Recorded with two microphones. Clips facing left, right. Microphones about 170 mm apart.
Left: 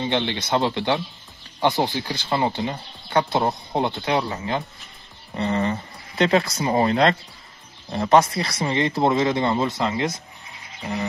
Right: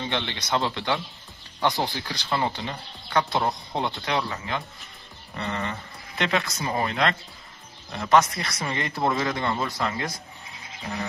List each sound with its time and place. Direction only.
0.0 s speech: 30° left (ahead or behind)